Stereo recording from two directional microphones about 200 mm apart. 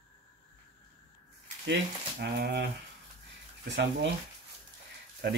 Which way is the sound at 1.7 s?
55° right (ahead or behind).